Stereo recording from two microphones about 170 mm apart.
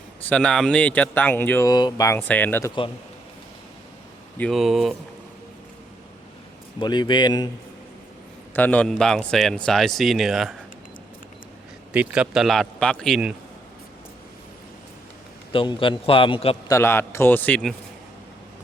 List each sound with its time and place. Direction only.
0.2 s speech: 10° left (ahead or behind)
1.7 s speech: 25° left (ahead or behind)
4.4 s speech: centre (ahead or behind)
6.7 s speech: 25° left (ahead or behind)
8.5 s speech: 10° left (ahead or behind)
11.9 s speech: 5° right (ahead or behind)
15.5 s a man's voice: 30° left (ahead or behind)
16.6 s speech: 15° left (ahead or behind)